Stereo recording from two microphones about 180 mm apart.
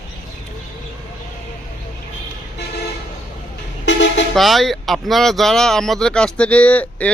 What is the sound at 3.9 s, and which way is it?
Vehicle, 90° left.